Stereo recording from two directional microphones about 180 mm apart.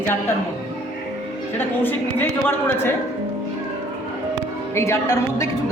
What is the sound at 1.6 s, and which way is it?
A woman's voice, 10° left (ahead or behind).